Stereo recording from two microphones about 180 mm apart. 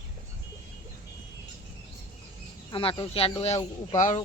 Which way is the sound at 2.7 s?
30° left (ahead or behind).